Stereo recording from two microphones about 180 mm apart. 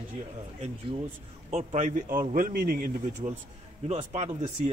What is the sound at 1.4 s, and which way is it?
Speech, 40° right (ahead or behind).